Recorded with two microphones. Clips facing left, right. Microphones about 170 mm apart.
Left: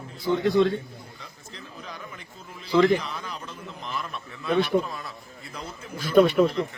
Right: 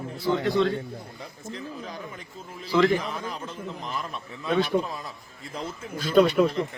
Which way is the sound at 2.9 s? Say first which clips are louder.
Right 2 dB; 45° right (ahead or behind).